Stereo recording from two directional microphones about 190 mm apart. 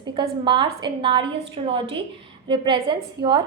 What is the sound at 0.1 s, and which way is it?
A woman's voice, 25° right (ahead or behind).